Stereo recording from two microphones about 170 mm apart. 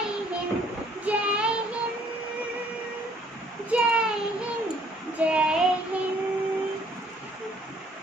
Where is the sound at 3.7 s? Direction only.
5° right (ahead or behind).